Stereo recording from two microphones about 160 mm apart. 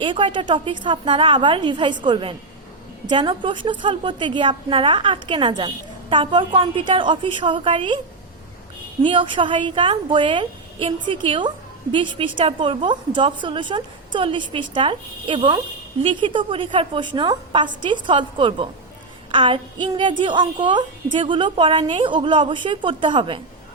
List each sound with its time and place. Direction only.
0.0 s a woman's voice: 30° right (ahead or behind)
9.0 s a woman's voice: 30° right (ahead or behind)